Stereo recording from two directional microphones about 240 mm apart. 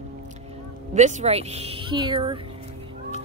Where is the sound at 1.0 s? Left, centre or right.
Right.